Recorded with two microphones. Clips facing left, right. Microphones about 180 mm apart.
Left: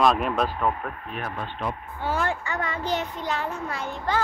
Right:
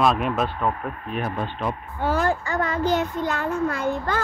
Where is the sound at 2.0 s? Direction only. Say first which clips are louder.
Right 4 dB; 40° right (ahead or behind).